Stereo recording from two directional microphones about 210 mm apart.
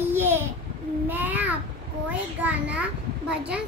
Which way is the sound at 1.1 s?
10° right (ahead or behind).